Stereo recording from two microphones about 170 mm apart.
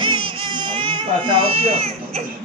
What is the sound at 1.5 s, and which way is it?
Speech, 35° right (ahead or behind).